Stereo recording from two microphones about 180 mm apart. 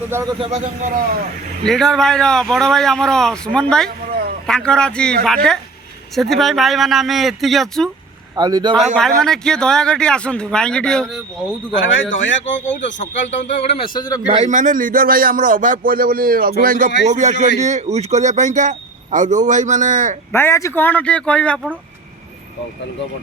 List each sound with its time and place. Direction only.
0.1 s a man's voice: 15° right (ahead or behind)
0.3 s a man's voice: 35° right (ahead or behind)
1.6 s speech: centre (ahead or behind)
3.8 s a sound: 55° right (ahead or behind)
4.4 s speech: 5° left (ahead or behind)
8.4 s a man's voice: 20° right (ahead or behind)
9.0 s speech: 5° left (ahead or behind)
11.8 s speech: 90° left
13.2 s speech: 40° left (ahead or behind)
13.6 s speech: 30° left (ahead or behind)
14.3 s a man's voice: 40° right (ahead or behind)
20.3 s speech: 15° left (ahead or behind)